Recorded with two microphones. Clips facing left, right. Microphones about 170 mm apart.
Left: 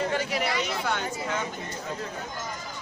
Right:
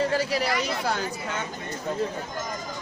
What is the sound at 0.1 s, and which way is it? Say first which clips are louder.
Speech: right 3 dB; 35° right (ahead or behind).